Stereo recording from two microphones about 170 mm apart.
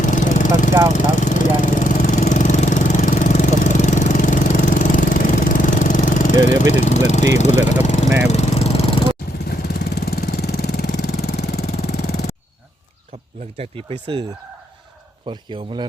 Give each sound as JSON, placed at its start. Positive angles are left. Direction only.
{"t": 0.0, "sound": "lawn mower", "side_deg": 50}
{"t": 0.9, "sound": "vehicle", "side_deg": 45}
{"t": 7.3, "sound": "speech", "side_deg": 45}
{"t": 7.9, "sound": "lawn mower", "side_deg": 45}
{"t": 8.3, "sound": "vehicle", "side_deg": 40}
{"t": 9.5, "sound": "vehicle", "side_deg": 65}
{"t": 14.1, "sound": "a man's voice", "side_deg": -30}
{"t": 15.3, "sound": "a man's voice", "side_deg": -25}